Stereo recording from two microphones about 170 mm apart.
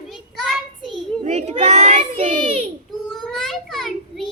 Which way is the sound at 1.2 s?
40° right (ahead or behind).